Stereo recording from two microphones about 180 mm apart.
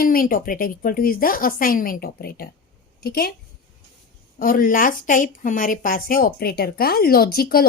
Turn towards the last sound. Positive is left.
turn(degrees=55)  # may be behind; listen again after turning